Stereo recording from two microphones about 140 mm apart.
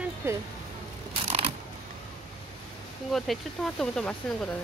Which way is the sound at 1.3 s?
50° right (ahead or behind).